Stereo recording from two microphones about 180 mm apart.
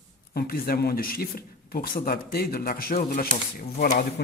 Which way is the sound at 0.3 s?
60° left (ahead or behind).